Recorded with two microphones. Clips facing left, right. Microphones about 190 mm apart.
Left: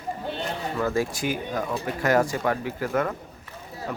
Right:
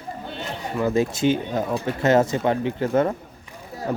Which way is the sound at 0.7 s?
20° right (ahead or behind).